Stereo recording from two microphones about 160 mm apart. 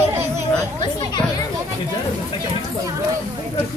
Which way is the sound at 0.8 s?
25° left (ahead or behind).